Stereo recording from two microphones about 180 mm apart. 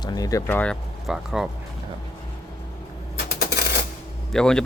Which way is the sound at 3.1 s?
60° left (ahead or behind).